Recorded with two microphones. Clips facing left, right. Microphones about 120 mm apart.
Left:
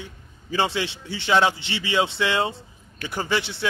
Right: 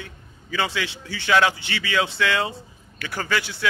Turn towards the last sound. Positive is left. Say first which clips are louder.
# left 1 dB
turn(degrees=25)  # may be behind; listen again after turning